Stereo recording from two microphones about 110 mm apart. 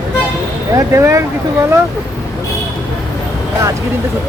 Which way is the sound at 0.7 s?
25° right (ahead or behind).